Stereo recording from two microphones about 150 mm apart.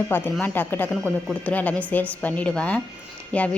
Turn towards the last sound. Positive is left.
turn(degrees=10)  # may be behind; listen again after turning